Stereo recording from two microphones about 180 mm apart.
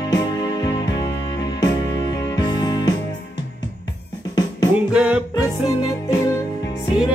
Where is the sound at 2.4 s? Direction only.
20° left (ahead or behind).